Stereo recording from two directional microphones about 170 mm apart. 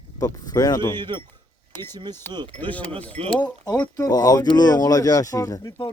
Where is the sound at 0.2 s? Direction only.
20° left (ahead or behind).